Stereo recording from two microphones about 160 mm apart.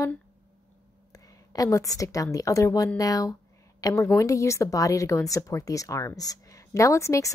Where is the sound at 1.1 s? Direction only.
20° left (ahead or behind).